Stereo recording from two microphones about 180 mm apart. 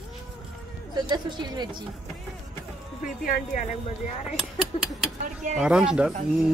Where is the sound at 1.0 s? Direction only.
25° right (ahead or behind).